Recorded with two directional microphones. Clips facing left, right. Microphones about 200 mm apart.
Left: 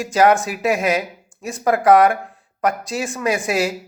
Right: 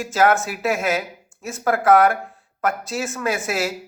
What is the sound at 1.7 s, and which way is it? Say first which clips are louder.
Speech: left 2 dB; 15° left (ahead or behind).